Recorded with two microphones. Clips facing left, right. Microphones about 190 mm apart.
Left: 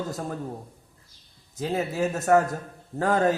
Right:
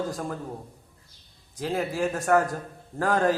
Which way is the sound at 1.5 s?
25° left (ahead or behind).